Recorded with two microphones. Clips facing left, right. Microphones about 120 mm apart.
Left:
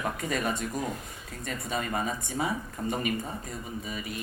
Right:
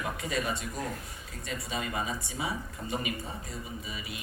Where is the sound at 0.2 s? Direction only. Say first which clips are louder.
Left 3 dB; 50° left (ahead or behind).